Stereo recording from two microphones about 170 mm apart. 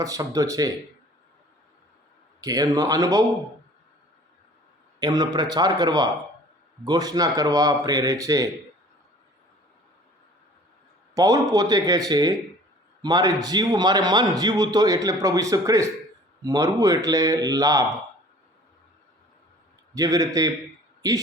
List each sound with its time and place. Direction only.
0.0 s a man's voice: 20° right (ahead or behind)
2.4 s a man's voice: 20° right (ahead or behind)
4.9 s a man's voice: 20° right (ahead or behind)
11.1 s a man's voice: 20° right (ahead or behind)
19.9 s a man's voice: 20° right (ahead or behind)